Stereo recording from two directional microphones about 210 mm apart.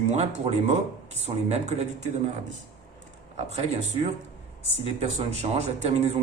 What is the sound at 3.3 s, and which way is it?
Speech, 30° right (ahead or behind).